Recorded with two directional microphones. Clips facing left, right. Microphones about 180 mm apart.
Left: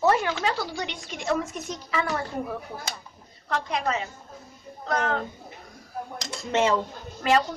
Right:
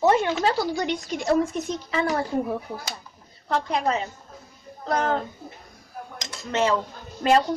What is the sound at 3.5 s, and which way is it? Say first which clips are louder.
A woman's voice: right 3 dB; 35° right (ahead or behind).